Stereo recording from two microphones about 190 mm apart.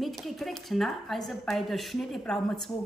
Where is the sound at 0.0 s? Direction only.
Centre (ahead or behind).